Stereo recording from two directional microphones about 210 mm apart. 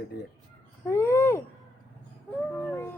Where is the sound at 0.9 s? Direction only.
10° left (ahead or behind).